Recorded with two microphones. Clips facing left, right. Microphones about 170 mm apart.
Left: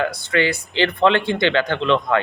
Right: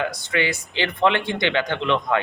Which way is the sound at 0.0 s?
15° right (ahead or behind).